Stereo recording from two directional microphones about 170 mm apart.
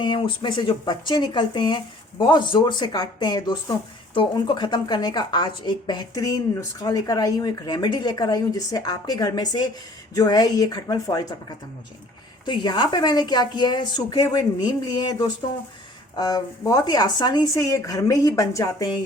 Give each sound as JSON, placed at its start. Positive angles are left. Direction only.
{"t": 0.0, "sound": "speech", "side_deg": 30}